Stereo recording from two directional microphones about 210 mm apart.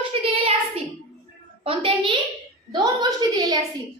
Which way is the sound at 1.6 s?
25° right (ahead or behind).